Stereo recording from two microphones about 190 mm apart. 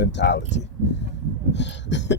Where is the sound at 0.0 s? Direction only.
65° left (ahead or behind).